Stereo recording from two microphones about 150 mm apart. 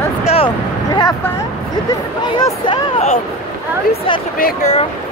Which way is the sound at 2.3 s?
30° left (ahead or behind).